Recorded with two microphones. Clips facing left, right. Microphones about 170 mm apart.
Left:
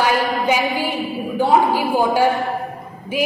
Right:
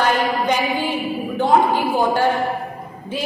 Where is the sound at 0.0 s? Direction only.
10° left (ahead or behind).